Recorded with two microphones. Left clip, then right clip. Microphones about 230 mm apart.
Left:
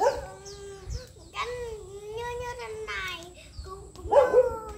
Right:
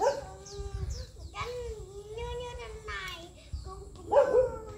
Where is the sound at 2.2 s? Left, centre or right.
Left.